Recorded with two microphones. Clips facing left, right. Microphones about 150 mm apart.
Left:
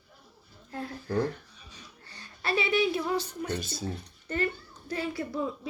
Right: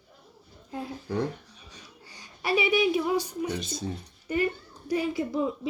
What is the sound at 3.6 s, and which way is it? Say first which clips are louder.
Speech: right 2 dB; 5° left (ahead or behind).